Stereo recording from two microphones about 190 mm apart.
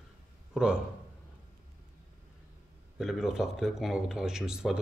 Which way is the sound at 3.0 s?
Centre (ahead or behind).